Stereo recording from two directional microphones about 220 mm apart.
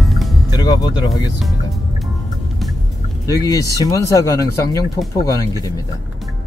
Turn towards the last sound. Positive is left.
turn(degrees=15)  # may be behind; listen again after turning